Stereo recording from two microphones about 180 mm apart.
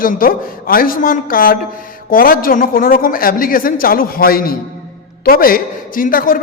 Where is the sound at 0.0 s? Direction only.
55° left (ahead or behind).